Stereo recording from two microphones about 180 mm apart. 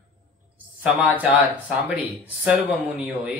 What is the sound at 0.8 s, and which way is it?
Speech, 10° right (ahead or behind).